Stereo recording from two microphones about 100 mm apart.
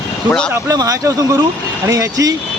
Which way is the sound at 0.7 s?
35° right (ahead or behind).